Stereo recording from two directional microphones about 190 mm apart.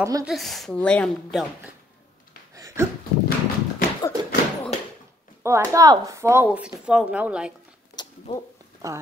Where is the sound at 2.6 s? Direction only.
15° right (ahead or behind).